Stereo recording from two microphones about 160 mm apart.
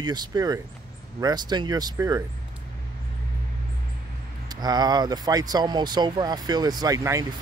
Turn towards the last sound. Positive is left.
turn(degrees=-20)  # may be behind; listen again after turning